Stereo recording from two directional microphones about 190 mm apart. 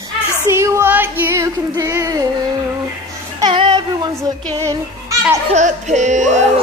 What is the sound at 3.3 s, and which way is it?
Child singing, 25° right (ahead or behind).